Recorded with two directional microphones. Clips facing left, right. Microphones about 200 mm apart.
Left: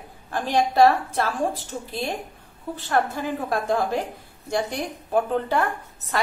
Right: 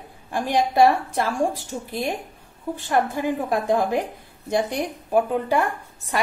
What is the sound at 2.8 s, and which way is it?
A woman's voice, 15° right (ahead or behind).